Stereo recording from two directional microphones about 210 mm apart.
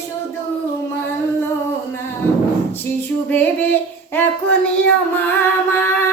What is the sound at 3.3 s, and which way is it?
Music, 10° left (ahead or behind).